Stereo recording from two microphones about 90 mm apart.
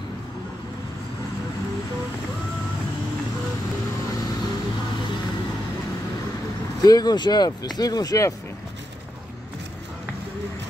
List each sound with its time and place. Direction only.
6.8 s speech: 45° left (ahead or behind)